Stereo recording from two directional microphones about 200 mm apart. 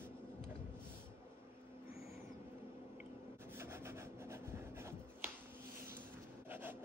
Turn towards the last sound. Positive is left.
turn(degrees=-10)  # may be behind; listen again after turning